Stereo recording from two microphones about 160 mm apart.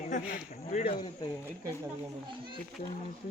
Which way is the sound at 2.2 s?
30° right (ahead or behind).